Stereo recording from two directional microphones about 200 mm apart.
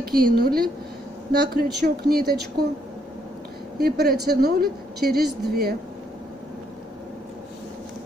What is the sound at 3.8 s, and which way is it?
Speech, 50° right (ahead or behind).